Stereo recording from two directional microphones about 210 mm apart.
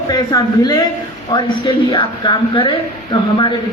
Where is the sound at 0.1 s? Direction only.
20° left (ahead or behind).